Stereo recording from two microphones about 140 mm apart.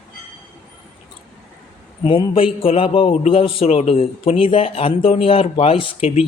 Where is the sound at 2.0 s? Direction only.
35° left (ahead or behind).